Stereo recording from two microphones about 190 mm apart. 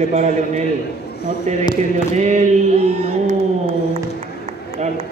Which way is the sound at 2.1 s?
40° right (ahead or behind).